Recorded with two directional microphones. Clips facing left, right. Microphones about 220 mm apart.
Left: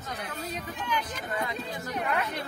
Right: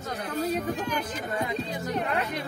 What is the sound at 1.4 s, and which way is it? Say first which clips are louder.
Speech: right 4 dB; 25° right (ahead or behind).